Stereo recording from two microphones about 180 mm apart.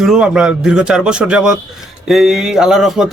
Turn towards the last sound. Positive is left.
turn(degrees=0)  # may be behind; listen again after turning